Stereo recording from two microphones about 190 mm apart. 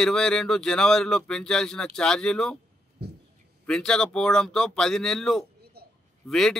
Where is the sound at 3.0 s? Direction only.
60° right (ahead or behind).